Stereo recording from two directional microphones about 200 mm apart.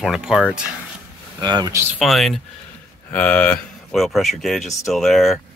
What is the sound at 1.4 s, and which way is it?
Speech, 20° right (ahead or behind).